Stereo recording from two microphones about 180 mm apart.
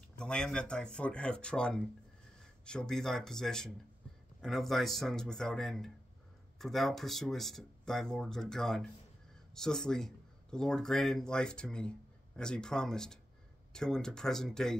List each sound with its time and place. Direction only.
0.2 s speech: 5° left (ahead or behind)